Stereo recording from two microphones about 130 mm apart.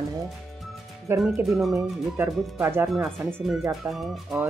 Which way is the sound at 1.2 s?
Centre (ahead or behind).